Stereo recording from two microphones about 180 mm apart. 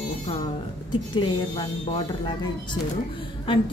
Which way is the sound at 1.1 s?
25° left (ahead or behind).